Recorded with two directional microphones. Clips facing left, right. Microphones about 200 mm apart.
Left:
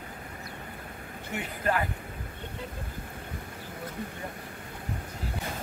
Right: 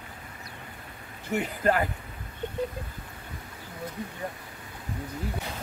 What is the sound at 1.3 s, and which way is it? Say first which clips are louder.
Speech: right 5 dB; 45° right (ahead or behind).